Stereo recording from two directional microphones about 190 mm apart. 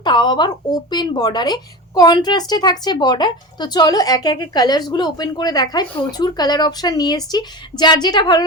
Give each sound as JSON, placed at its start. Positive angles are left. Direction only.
{"t": 0.0, "sound": "speech", "side_deg": 25}